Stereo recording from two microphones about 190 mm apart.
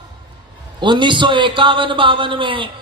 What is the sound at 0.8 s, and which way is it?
Music, 25° right (ahead or behind).